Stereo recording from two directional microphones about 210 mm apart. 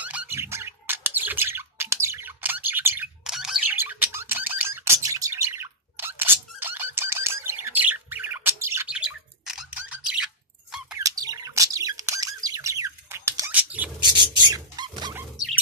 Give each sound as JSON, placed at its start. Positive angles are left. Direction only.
{"t": 0.0, "sound": "bird", "side_deg": -5}
{"t": 11.0, "sound": "bird", "side_deg": -15}
{"t": 14.1, "sound": "a sound", "side_deg": -20}